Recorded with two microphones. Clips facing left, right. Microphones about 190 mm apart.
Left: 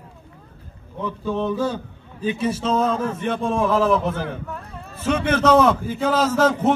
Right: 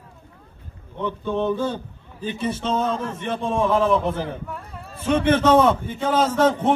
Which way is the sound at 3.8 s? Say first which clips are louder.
Left 1 dB; 5° left (ahead or behind).